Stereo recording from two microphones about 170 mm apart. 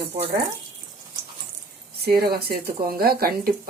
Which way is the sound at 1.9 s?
65° right (ahead or behind).